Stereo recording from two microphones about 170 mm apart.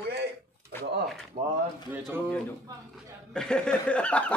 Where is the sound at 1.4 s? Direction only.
35° right (ahead or behind).